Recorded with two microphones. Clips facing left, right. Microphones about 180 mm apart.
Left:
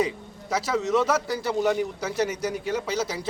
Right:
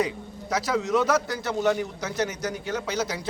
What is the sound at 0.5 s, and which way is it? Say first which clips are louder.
A man's voice: left 1 dB; 5° left (ahead or behind).